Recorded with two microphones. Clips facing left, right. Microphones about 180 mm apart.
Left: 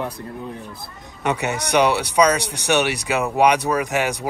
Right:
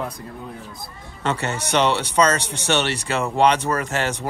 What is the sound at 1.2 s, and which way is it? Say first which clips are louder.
Speech: left 2 dB; 15° left (ahead or behind).